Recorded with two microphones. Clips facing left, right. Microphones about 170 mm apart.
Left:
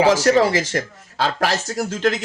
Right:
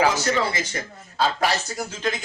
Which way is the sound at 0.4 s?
90° left.